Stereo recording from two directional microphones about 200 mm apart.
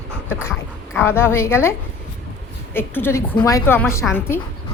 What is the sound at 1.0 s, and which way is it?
Speech, 10° left (ahead or behind).